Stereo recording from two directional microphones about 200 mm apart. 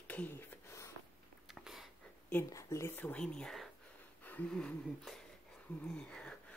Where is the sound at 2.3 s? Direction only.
15° left (ahead or behind).